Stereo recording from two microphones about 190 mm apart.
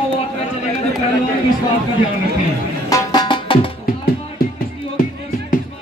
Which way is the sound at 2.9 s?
20° left (ahead or behind).